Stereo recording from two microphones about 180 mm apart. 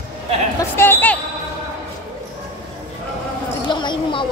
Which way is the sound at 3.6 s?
25° left (ahead or behind).